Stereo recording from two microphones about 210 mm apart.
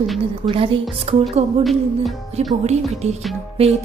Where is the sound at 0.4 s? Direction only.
25° right (ahead or behind).